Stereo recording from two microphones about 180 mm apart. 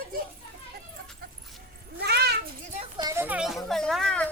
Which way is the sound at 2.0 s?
65° right (ahead or behind).